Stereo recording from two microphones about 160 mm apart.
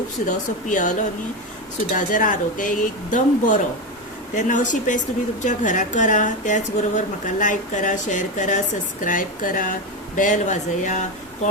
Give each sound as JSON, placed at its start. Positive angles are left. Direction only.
{"t": 0.3, "sound": "speech", "side_deg": 50}
{"t": 2.0, "sound": "speech", "side_deg": 55}